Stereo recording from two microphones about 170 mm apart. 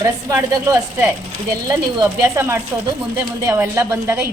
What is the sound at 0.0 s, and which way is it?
A woman's voice, 20° right (ahead or behind).